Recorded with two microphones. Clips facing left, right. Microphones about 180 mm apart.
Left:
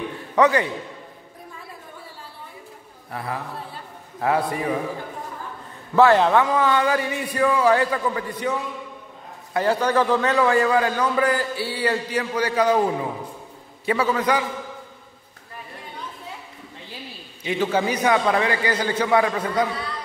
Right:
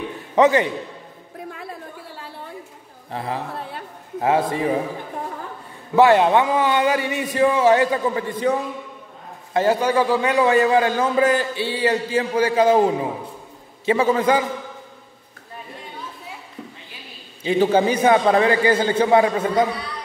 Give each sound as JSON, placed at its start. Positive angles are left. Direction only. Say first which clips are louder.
{"t": 0.4, "sound": "a man's voice", "louder": "right 3 dB", "side_deg": -20}
{"t": 3.1, "sound": "a man's voice", "louder": "right 3 dB", "side_deg": -25}
{"t": 5.9, "sound": "a man's voice", "louder": "right 2 dB", "side_deg": -15}
{"t": 17.4, "sound": "a man's voice", "louder": "right 5 dB", "side_deg": -30}